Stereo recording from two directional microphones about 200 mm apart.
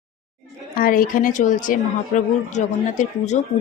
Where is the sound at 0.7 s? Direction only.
45° left (ahead or behind).